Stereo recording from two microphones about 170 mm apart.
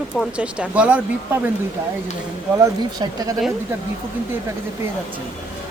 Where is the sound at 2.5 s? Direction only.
20° right (ahead or behind).